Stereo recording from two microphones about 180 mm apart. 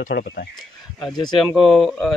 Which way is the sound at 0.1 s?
60° left (ahead or behind).